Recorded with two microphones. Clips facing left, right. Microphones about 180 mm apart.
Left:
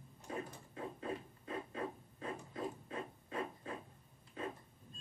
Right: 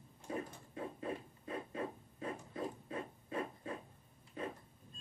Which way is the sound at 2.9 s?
30° right (ahead or behind).